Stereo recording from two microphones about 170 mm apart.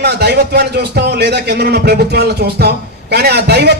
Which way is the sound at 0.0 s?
75° right (ahead or behind).